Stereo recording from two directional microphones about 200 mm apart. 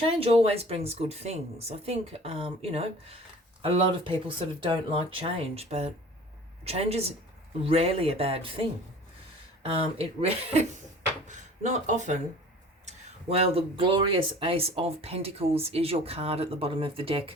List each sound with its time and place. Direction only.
0.0 s speech: 30° right (ahead or behind)
9.6 s speech: 30° right (ahead or behind)
13.3 s speech: 30° right (ahead or behind)